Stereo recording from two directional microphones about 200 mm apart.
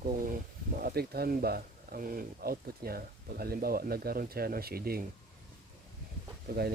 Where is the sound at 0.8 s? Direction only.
50° right (ahead or behind).